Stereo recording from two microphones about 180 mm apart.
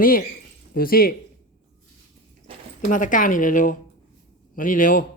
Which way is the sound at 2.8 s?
45° left (ahead or behind).